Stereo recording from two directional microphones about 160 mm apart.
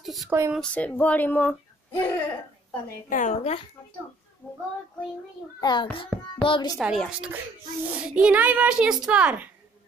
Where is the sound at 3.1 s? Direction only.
50° left (ahead or behind).